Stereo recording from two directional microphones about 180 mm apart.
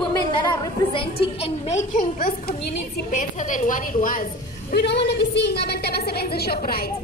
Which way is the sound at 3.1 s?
45° left (ahead or behind).